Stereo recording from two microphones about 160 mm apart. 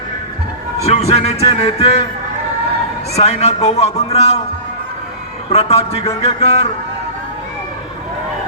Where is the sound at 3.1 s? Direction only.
40° left (ahead or behind).